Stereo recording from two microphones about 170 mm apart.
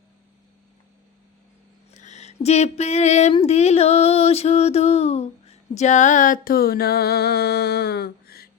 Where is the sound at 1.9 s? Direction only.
45° left (ahead or behind).